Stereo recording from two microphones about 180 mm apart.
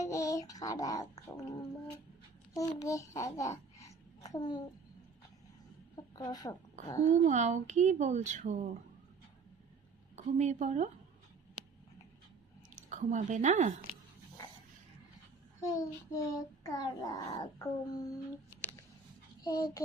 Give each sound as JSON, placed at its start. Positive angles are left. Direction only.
{"t": 0.0, "sound": "a child's voice", "side_deg": 20}
{"t": 6.1, "sound": "a child's voice", "side_deg": 20}
{"t": 7.1, "sound": "speech", "side_deg": -40}
{"t": 10.2, "sound": "speech", "side_deg": -40}
{"t": 12.7, "sound": "speech", "side_deg": -40}
{"t": 15.6, "sound": "a child's voice", "side_deg": 20}
{"t": 19.5, "sound": "a child's voice", "side_deg": 20}